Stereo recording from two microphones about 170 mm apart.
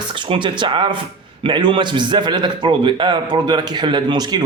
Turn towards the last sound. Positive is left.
turn(degrees=-25)  # may be behind; listen again after turning